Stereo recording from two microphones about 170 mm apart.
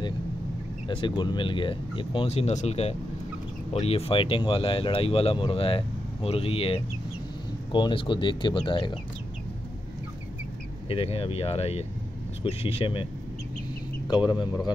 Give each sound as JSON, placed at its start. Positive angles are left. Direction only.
{"t": 0.8, "sound": "speech", "side_deg": 30}
{"t": 10.9, "sound": "speech", "side_deg": 35}